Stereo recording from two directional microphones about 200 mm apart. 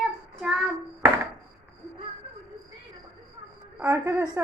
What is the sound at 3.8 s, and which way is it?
Speech, 10° right (ahead or behind).